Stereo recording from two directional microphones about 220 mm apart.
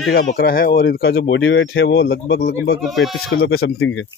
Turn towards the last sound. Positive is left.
turn(degrees=60)  # may be behind; listen again after turning